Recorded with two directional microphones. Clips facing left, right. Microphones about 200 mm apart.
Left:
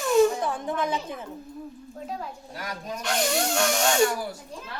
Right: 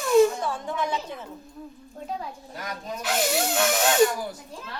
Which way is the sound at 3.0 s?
5° right (ahead or behind).